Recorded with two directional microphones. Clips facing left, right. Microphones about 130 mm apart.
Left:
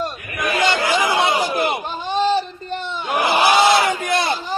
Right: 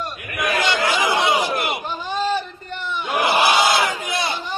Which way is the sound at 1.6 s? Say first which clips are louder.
Left 4 dB; 35° left (ahead or behind).